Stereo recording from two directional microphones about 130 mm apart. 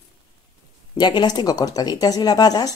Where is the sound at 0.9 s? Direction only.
35° left (ahead or behind).